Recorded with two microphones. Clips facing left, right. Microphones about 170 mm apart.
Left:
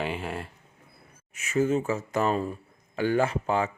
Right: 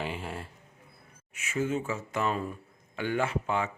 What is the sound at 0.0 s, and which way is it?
Speech, 70° left (ahead or behind).